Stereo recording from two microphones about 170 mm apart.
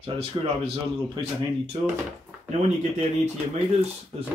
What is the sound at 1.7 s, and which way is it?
Speech, 30° right (ahead or behind).